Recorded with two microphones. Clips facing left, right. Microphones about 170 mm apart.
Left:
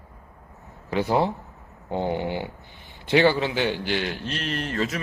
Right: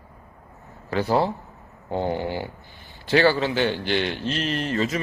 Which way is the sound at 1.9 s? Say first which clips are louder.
Right 1 dB; 15° left (ahead or behind).